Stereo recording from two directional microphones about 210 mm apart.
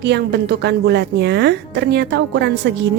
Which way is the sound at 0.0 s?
50° right (ahead or behind).